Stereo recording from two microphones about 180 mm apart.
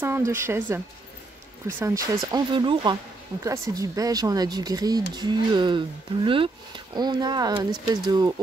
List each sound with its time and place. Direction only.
0.0 s speech: 15° right (ahead or behind)